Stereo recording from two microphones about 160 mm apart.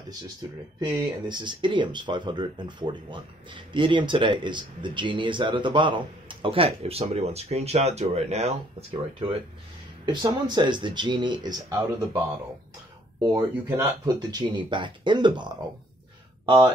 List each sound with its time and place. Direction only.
0.7 s speech: 30° right (ahead or behind)
10.2 s speech: 25° right (ahead or behind)
13.2 s speech: 15° right (ahead or behind)